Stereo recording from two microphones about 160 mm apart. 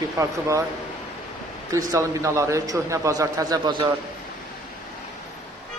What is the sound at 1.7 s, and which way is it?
Speech, 20° right (ahead or behind).